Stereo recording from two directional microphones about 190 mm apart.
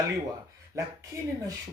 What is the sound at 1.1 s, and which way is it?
Speech, 15° right (ahead or behind).